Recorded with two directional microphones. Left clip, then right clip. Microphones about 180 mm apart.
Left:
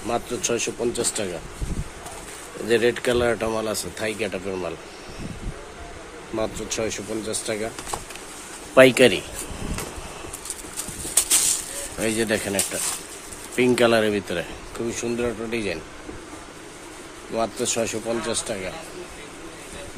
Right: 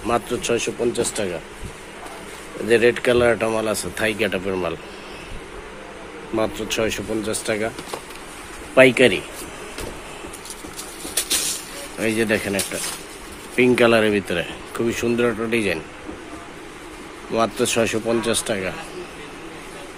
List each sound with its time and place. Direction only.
0.0 s speech: 5° left (ahead or behind)
0.4 s speech: 20° left (ahead or behind)
2.7 s speech: 15° left (ahead or behind)
4.0 s speech: centre (ahead or behind)
6.3 s speech: 5° left (ahead or behind)
8.7 s speech: 35° left (ahead or behind)
11.1 s bird: 20° left (ahead or behind)
12.0 s speech: 15° left (ahead or behind)
14.9 s speech: centre (ahead or behind)
17.3 s speech: centre (ahead or behind)